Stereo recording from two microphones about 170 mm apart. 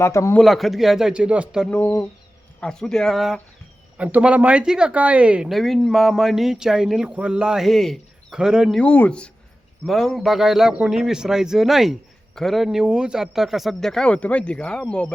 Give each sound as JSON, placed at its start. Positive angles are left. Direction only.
{"t": 0.0, "sound": "speech", "side_deg": 15}
{"t": 0.3, "sound": "a man's voice", "side_deg": 0}
{"t": 1.7, "sound": "a man's voice", "side_deg": 10}
{"t": 8.8, "sound": "a man's voice", "side_deg": 10}